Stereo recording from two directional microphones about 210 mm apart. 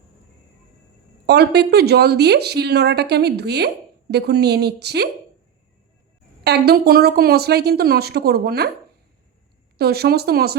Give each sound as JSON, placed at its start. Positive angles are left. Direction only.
{"t": 1.3, "sound": "speech", "side_deg": -50}
{"t": 6.4, "sound": "speech", "side_deg": -50}
{"t": 9.7, "sound": "speech", "side_deg": -50}